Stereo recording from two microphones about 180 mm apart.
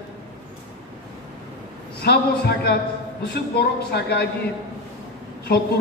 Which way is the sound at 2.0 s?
60° left (ahead or behind).